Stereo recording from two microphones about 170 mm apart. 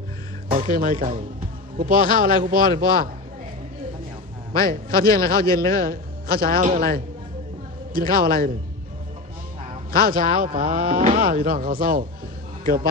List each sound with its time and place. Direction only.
0.5 s a man's voice: 55° right (ahead or behind)
4.6 s a man's voice: 60° right (ahead or behind)
9.9 s a man's voice: 55° right (ahead or behind)